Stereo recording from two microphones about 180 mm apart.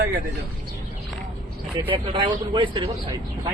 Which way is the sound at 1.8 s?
30° right (ahead or behind).